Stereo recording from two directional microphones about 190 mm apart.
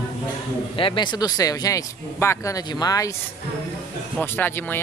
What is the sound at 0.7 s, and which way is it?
Speech, 25° left (ahead or behind).